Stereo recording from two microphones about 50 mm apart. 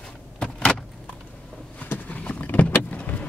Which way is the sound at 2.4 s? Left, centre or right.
Left.